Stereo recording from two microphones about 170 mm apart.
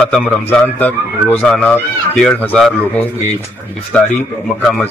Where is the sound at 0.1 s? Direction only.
10° left (ahead or behind).